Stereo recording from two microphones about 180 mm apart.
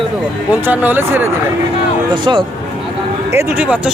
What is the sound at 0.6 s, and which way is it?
Speech, 10° right (ahead or behind).